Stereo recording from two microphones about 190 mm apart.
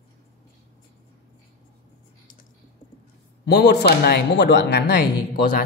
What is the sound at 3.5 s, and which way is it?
Speech, 60° left (ahead or behind).